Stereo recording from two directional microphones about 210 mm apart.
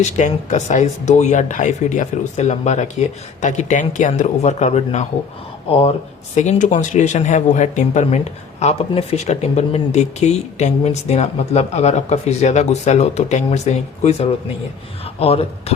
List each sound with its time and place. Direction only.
0.0 s speech: 35° left (ahead or behind)